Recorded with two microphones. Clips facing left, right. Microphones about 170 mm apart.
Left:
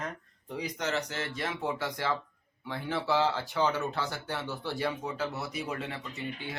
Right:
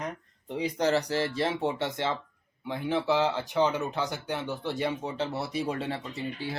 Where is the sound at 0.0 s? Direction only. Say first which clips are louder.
Right 3 dB; 25° right (ahead or behind).